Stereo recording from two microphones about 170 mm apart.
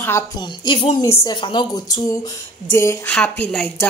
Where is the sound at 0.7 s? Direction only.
30° left (ahead or behind).